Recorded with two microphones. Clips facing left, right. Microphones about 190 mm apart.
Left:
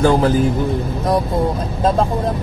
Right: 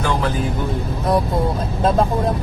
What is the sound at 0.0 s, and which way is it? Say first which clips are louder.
Speech: left 7 dB; 30° left (ahead or behind).